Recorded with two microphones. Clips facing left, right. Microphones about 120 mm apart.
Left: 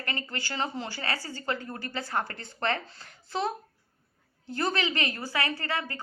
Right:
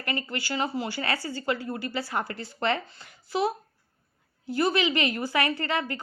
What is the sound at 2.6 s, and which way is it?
Speech, 15° right (ahead or behind).